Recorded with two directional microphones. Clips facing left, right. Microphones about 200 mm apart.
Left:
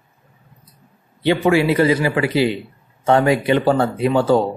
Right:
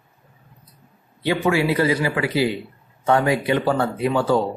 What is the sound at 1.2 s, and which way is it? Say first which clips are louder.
Speech: left 4 dB; 30° left (ahead or behind).